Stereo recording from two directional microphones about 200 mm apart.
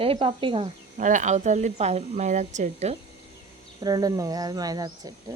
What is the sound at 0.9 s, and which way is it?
Speech, 40° right (ahead or behind).